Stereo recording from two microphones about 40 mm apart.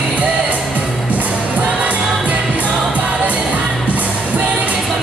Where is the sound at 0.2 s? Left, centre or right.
Right.